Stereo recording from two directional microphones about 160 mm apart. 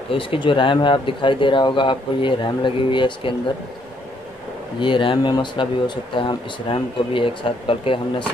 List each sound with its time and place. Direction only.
0.1 s speech: 35° left (ahead or behind)
4.7 s speech: 30° left (ahead or behind)